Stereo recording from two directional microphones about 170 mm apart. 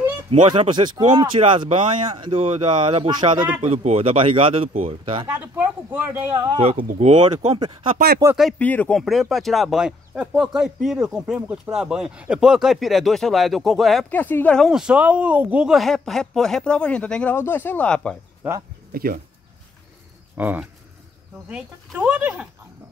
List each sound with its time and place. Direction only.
0.5 s speech: 25° right (ahead or behind)
2.4 s speech: 40° right (ahead or behind)
5.3 s speech: 10° right (ahead or behind)
6.5 s speech: 35° right (ahead or behind)
7.3 s speech: 30° right (ahead or behind)
8.4 s speech: 5° left (ahead or behind)
14.1 s speech: 10° left (ahead or behind)
18.4 s speech: 10° right (ahead or behind)
18.9 s speech: 60° right (ahead or behind)
20.3 s speech: 10° right (ahead or behind)